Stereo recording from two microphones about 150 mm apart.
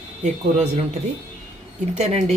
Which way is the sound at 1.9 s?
50° right (ahead or behind).